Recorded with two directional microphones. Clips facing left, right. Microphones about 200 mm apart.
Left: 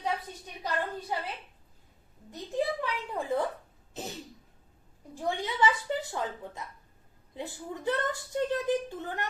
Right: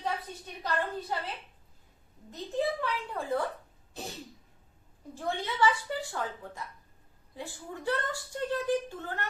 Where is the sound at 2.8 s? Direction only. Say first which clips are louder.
Left 1 dB; 20° left (ahead or behind).